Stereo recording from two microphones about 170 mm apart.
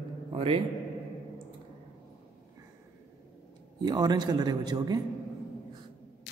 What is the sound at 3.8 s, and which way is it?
A man's voice, 25° right (ahead or behind).